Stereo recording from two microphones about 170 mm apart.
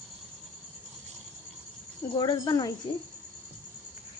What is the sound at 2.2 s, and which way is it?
Speech, 25° left (ahead or behind).